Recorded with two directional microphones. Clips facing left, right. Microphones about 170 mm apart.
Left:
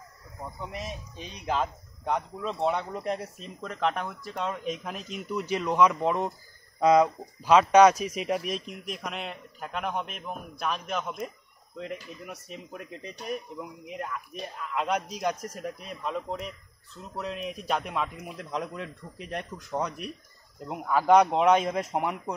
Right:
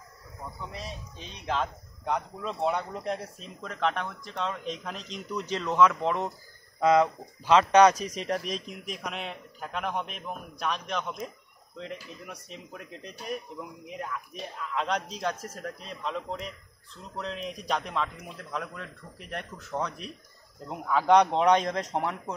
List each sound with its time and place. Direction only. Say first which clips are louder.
0.7 s speech: left 3 dB; 15° left (ahead or behind)
1.4 s speech: left 1 dB; 5° left (ahead or behind)